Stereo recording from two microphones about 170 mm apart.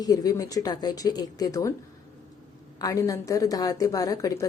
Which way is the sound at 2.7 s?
20° left (ahead or behind).